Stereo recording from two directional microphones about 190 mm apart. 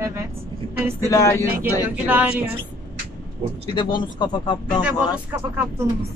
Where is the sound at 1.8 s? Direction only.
10° right (ahead or behind).